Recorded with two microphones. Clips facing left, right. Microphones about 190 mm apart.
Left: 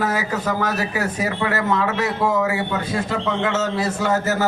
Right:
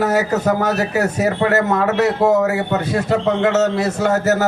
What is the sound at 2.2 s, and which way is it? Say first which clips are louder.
Speech: right 5 dB; 40° right (ahead or behind).